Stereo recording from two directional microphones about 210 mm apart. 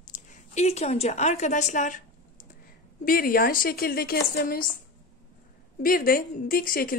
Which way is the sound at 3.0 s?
45° left (ahead or behind).